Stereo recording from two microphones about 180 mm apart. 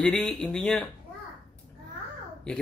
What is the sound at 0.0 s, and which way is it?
Speech, 5° left (ahead or behind).